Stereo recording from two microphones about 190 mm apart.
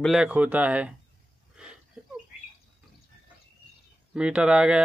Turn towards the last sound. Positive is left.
turn(degrees=-5)  # may be behind; listen again after turning